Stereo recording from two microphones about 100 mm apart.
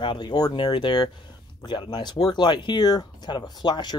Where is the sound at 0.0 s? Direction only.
50° left (ahead or behind).